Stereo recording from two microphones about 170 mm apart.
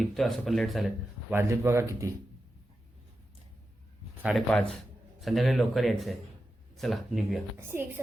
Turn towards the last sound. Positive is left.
turn(degrees=-15)  # may be behind; listen again after turning